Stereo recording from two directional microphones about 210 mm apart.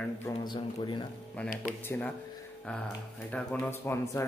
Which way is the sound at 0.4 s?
20° left (ahead or behind).